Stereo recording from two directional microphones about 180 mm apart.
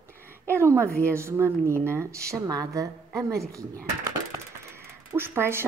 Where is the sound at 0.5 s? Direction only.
15° right (ahead or behind).